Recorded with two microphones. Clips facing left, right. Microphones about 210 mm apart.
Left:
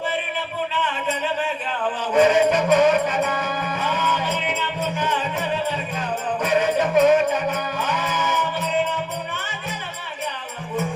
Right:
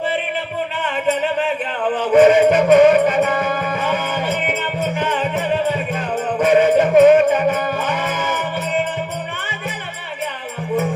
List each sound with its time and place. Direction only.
0.7 s music: 55° right (ahead or behind)
6.4 s music: 55° right (ahead or behind)